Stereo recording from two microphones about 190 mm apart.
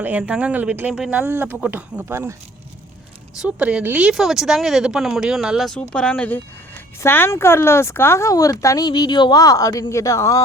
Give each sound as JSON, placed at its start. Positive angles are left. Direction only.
{"t": 0.0, "sound": "speech", "side_deg": -10}
{"t": 3.4, "sound": "speech", "side_deg": -5}